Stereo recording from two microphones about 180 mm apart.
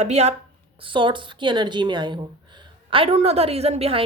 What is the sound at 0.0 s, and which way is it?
A woman's voice, 35° right (ahead or behind).